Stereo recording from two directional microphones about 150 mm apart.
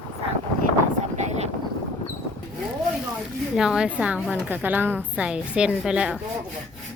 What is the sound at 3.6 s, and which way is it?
A woman's voice, 5° right (ahead or behind).